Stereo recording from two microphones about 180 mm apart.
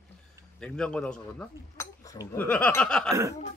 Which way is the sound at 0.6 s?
5° left (ahead or behind).